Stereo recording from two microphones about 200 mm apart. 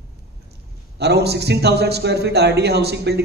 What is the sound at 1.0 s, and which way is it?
A man's voice, 55° right (ahead or behind).